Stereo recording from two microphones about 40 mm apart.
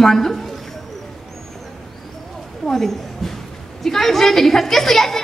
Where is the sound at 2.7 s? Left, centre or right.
Centre.